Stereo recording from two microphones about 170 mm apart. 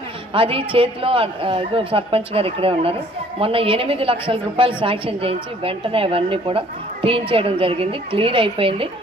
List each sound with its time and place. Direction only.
0.3 s a man's voice: 30° right (ahead or behind)